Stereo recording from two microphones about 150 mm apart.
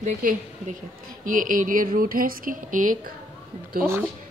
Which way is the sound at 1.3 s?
65° right (ahead or behind).